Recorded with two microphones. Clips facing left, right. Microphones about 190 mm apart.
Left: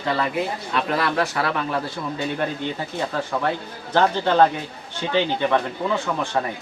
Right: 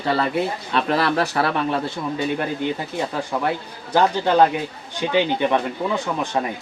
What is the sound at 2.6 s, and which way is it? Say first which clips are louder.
Speech: right 4 dB; 10° right (ahead or behind).